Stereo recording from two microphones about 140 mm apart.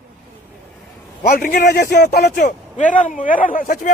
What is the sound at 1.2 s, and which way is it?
A man's voice, 90° left.